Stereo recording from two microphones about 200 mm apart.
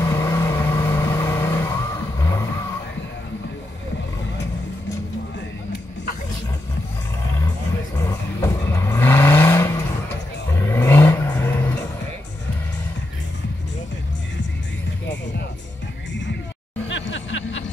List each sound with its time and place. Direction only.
0.0 s vehicle: 15° left (ahead or behind)
7.9 s vehicle: 15° left (ahead or behind)
16.1 s music: 65° left (ahead or behind)